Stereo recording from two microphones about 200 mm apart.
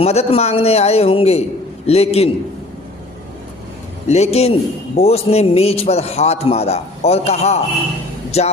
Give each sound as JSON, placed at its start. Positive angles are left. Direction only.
{"t": 0.0, "sound": "a man's voice", "side_deg": 30}
{"t": 4.1, "sound": "a man's voice", "side_deg": 30}